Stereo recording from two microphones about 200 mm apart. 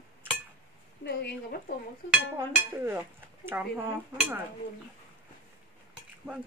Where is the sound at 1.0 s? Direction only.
55° left (ahead or behind).